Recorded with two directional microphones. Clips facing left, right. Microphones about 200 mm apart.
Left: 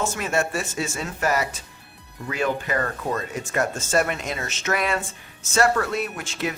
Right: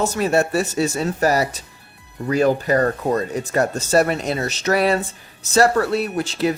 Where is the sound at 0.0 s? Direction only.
35° right (ahead or behind).